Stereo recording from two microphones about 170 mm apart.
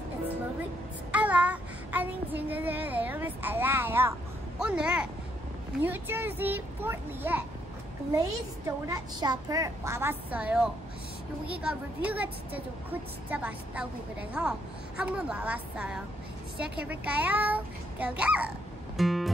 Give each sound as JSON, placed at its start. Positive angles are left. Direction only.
{"t": 1.1, "sound": "child singing", "side_deg": -10}
{"t": 4.6, "sound": "a woman's voice", "side_deg": -5}
{"t": 18.9, "sound": "music", "side_deg": 0}